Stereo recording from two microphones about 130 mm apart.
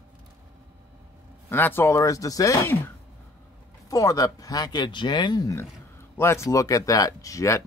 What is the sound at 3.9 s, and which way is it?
Speech, 25° left (ahead or behind).